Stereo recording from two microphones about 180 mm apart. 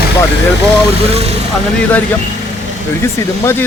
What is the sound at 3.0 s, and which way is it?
Speech, 15° left (ahead or behind).